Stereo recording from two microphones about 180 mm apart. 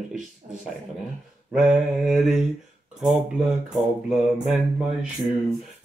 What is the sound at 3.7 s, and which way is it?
Mantra, centre (ahead or behind).